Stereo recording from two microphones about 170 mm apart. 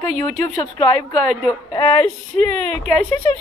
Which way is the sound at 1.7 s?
15° left (ahead or behind).